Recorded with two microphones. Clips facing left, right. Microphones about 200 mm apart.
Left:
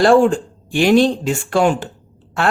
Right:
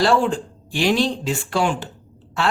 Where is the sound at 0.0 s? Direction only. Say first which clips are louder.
Left 6 dB; 50° left (ahead or behind).